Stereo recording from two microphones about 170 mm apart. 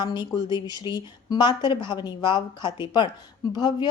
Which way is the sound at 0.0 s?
25° left (ahead or behind).